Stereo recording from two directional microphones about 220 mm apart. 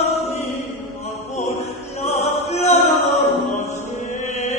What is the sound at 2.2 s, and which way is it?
Chant, 30° left (ahead or behind).